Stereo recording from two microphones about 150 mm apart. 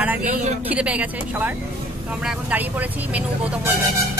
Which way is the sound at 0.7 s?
10° right (ahead or behind).